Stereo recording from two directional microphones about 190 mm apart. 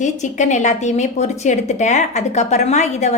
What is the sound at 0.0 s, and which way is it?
A woman's voice, 40° left (ahead or behind).